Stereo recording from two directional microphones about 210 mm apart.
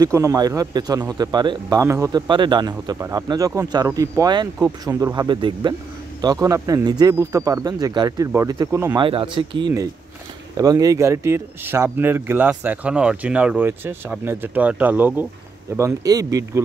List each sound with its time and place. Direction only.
0.0 s speech: 15° right (ahead or behind)